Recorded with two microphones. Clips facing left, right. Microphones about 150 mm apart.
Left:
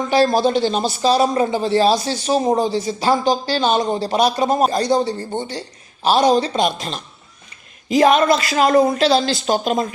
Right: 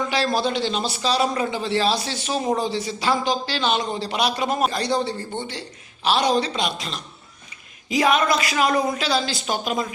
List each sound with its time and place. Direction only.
0.1 s a man's voice: 45° left (ahead or behind)